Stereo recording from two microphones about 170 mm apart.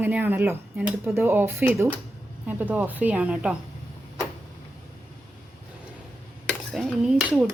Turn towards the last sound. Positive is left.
turn(degrees=-5)  # may be behind; listen again after turning